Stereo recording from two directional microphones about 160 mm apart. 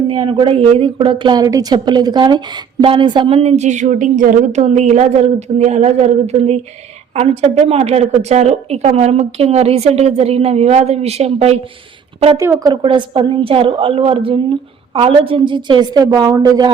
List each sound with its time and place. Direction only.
0.1 s a woman's voice: 30° right (ahead or behind)
12.4 s a woman's voice: 20° right (ahead or behind)